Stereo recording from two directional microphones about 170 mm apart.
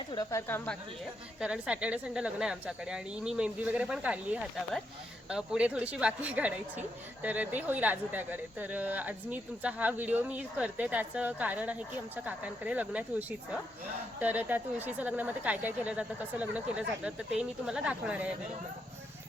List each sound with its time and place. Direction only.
0.1 s speech: 20° left (ahead or behind)
1.4 s a woman's voice: 5° right (ahead or behind)